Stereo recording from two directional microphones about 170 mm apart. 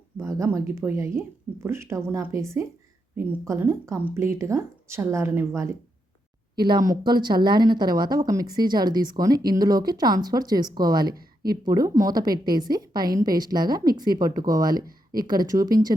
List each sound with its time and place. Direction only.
0.2 s speech: 15° right (ahead or behind)
6.6 s a woman's voice: 25° right (ahead or behind)